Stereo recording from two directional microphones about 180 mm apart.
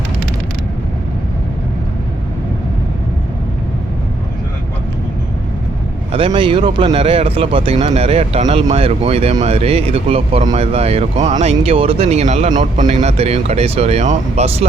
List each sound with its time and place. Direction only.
6.1 s speech: 30° right (ahead or behind)